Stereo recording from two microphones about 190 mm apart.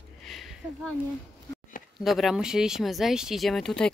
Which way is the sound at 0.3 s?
Centre (ahead or behind).